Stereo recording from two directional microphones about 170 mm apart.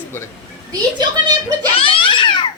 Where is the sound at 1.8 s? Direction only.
30° left (ahead or behind).